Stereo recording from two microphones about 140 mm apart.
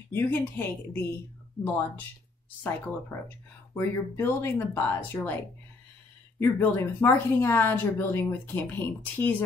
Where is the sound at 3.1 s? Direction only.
20° left (ahead or behind).